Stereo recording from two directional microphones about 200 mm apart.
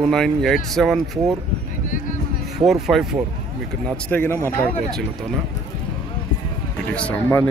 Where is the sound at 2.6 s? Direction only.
Centre (ahead or behind).